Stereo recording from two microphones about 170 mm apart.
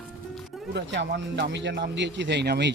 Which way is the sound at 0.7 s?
90° right.